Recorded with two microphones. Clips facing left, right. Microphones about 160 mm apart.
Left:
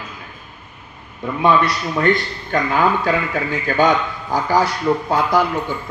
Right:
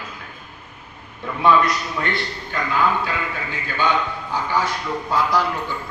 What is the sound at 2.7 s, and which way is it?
A man's voice, 45° left (ahead or behind).